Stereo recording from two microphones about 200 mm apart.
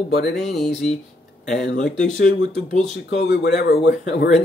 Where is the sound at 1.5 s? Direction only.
60° left (ahead or behind).